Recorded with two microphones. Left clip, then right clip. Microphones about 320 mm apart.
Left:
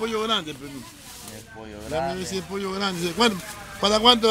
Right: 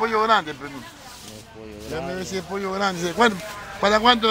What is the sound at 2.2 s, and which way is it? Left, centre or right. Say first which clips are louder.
A man's voice: right 2 dB; centre.